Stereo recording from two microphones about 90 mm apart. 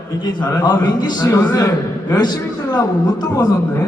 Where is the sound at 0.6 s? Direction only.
50° left (ahead or behind).